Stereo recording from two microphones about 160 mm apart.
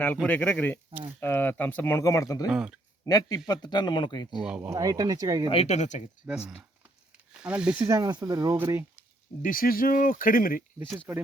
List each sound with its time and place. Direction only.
0.0 s speech: 10° left (ahead or behind)
2.5 s speech: 5° right (ahead or behind)
3.1 s speech: 25° left (ahead or behind)
4.3 s speech: 5° right (ahead or behind)
4.7 s speech: 20° right (ahead or behind)
5.5 s speech: 40° left (ahead or behind)
6.2 s speech: 5° right (ahead or behind)
7.9 s speech: 20° right (ahead or behind)
9.4 s speech: 60° left (ahead or behind)
11.1 s speech: 10° right (ahead or behind)